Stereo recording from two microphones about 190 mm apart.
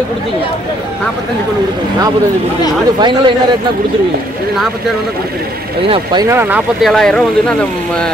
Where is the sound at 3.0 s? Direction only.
25° right (ahead or behind).